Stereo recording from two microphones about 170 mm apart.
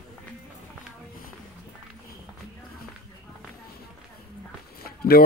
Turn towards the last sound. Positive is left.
turn(degrees=65)  # may be behind; listen again after turning